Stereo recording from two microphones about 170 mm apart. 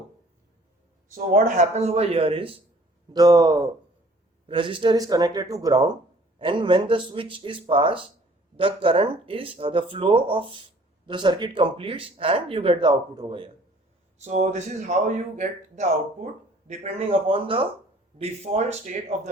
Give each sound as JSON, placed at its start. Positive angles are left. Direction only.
{"t": 1.1, "sound": "speech", "side_deg": -45}
{"t": 14.2, "sound": "speech", "side_deg": -40}